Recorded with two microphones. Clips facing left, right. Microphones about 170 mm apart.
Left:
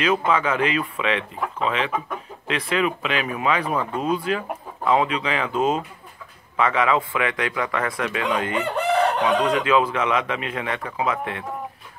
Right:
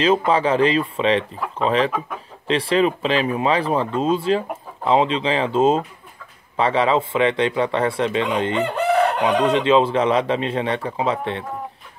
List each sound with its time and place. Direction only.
0.0 s speech: 30° right (ahead or behind)